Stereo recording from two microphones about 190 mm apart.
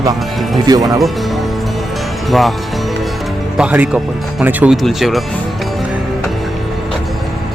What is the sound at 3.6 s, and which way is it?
Speech, 5° right (ahead or behind).